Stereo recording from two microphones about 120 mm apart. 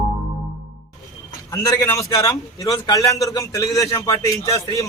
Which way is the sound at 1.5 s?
25° left (ahead or behind).